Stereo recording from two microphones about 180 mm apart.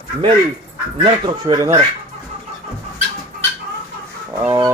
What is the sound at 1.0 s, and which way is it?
Speech, 25° right (ahead or behind).